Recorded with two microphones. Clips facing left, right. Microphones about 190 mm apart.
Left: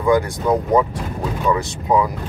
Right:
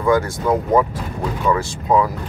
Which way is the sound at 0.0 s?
15° left (ahead or behind).